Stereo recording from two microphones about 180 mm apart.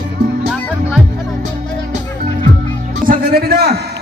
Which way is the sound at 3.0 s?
60° right (ahead or behind).